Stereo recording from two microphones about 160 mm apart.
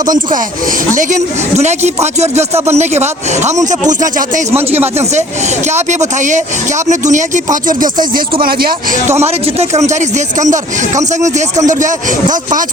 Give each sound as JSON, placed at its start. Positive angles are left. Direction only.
{"t": 0.9, "sound": "speech", "side_deg": -45}
{"t": 5.7, "sound": "speech", "side_deg": -45}
{"t": 9.2, "sound": "speech", "side_deg": -45}